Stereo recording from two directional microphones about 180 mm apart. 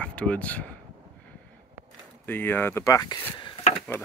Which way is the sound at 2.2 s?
10° left (ahead or behind).